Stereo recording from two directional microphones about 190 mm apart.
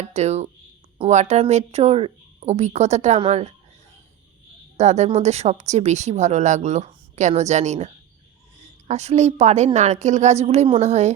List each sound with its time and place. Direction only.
0.0 s speech: 35° right (ahead or behind)
4.8 s speech: 35° right (ahead or behind)